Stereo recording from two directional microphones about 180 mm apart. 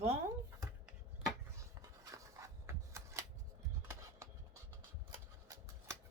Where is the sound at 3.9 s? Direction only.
15° right (ahead or behind).